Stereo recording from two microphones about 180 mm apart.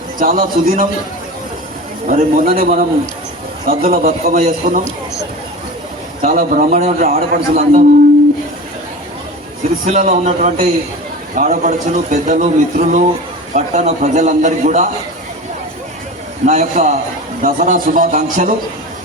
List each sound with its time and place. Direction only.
0.2 s a man's voice: 50° right (ahead or behind)
2.0 s a man's voice: 50° right (ahead or behind)
6.2 s a man's voice: 50° right (ahead or behind)
7.0 s a man's voice: 55° right (ahead or behind)
9.8 s a man's voice: 40° right (ahead or behind)
16.5 s a man's voice: 45° right (ahead or behind)